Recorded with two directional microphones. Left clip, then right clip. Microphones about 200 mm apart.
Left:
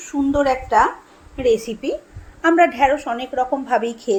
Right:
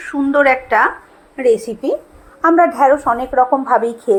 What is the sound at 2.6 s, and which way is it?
A woman's voice, 40° right (ahead or behind).